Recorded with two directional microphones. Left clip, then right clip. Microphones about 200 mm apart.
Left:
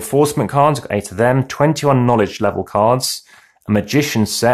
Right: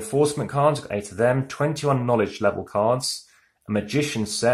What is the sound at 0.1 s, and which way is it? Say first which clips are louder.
Speech: left 7 dB; 35° left (ahead or behind).